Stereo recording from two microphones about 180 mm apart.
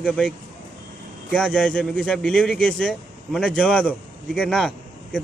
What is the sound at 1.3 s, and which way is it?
Speech, 5° left (ahead or behind).